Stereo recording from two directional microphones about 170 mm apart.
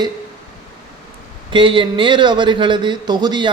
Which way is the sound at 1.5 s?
30° right (ahead or behind).